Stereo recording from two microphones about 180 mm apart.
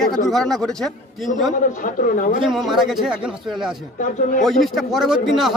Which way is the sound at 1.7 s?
45° left (ahead or behind).